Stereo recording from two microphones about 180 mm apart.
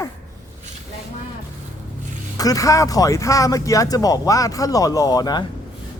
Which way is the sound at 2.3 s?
20° left (ahead or behind).